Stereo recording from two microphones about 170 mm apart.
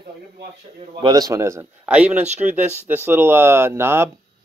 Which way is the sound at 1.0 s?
20° right (ahead or behind).